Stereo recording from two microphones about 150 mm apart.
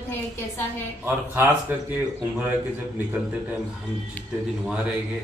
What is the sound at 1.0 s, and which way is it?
Speech, 15° right (ahead or behind).